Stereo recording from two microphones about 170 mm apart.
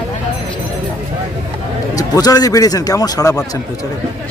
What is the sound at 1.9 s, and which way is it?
A man's voice, 20° left (ahead or behind).